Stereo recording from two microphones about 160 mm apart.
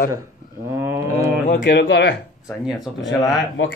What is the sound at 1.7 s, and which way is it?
Speech, 90° left.